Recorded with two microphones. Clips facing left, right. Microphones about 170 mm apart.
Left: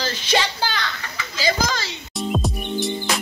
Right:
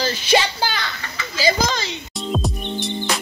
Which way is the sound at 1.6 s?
20° right (ahead or behind).